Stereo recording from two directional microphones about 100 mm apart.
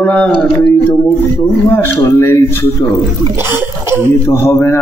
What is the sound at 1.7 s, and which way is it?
Speech, 20° left (ahead or behind).